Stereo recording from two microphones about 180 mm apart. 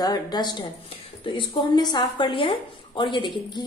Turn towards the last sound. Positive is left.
turn(degrees=25)  # may be behind; listen again after turning